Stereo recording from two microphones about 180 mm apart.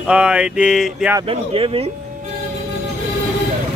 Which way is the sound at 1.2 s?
30° right (ahead or behind).